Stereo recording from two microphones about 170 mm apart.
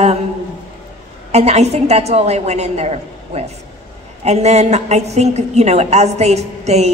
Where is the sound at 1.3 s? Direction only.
40° right (ahead or behind).